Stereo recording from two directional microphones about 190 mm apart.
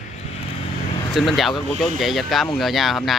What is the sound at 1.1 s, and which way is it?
Speech, centre (ahead or behind).